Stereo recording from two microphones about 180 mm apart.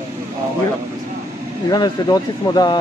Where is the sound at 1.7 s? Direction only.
20° left (ahead or behind).